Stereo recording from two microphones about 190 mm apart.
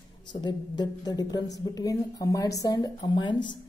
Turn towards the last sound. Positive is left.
turn(degrees=25)  # may be behind; listen again after turning